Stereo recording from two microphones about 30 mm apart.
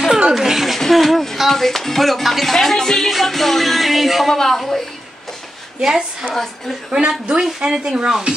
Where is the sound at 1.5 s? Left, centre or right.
Centre.